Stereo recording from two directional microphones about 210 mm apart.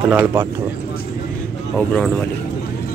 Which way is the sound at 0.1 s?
10° right (ahead or behind).